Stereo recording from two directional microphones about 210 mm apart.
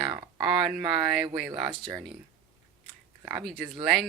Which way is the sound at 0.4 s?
Centre (ahead or behind).